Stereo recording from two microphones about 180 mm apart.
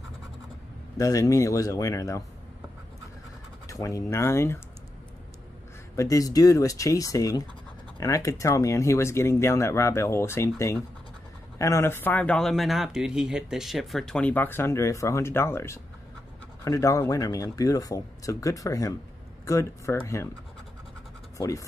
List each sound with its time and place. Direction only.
0.9 s speech: 20° left (ahead or behind)
3.6 s speech: 20° left (ahead or behind)
5.9 s speech: 20° left (ahead or behind)
21.4 s speech: 20° left (ahead or behind)